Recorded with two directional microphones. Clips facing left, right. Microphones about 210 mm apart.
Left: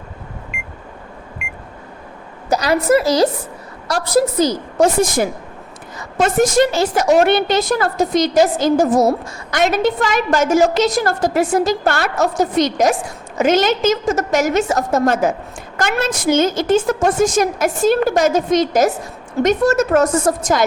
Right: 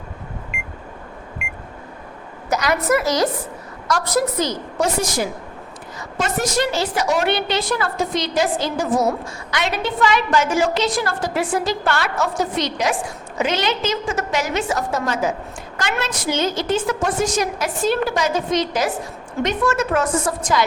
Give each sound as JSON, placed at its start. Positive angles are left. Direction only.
{"t": 0.5, "sound": "beep", "side_deg": 0}
{"t": 2.5, "sound": "a woman's voice", "side_deg": 35}
{"t": 4.8, "sound": "a woman's voice", "side_deg": 50}